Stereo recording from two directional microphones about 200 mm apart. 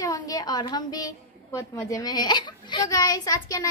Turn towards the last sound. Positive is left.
turn(degrees=15)  # may be behind; listen again after turning